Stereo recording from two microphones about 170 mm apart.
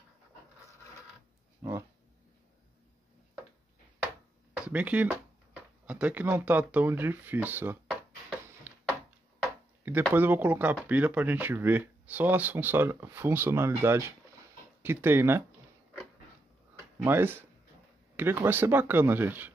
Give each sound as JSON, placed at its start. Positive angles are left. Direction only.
{"t": 1.6, "sound": "speech", "side_deg": -15}
{"t": 4.6, "sound": "speech", "side_deg": -10}
{"t": 8.7, "sound": "a sound", "side_deg": -10}
{"t": 9.8, "sound": "speech", "side_deg": -10}
{"t": 16.7, "sound": "a sound", "side_deg": -15}
{"t": 18.1, "sound": "speech", "side_deg": -15}